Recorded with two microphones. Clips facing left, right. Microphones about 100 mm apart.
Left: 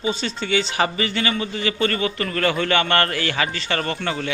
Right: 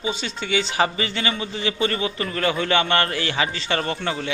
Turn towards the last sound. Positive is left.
turn(degrees=-20)  # may be behind; listen again after turning